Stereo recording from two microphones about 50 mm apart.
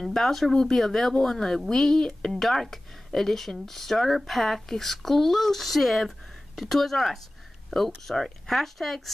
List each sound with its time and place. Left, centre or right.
0.0 s speech: centre